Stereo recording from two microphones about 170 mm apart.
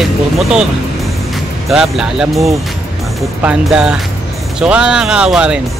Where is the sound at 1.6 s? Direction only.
5° right (ahead or behind).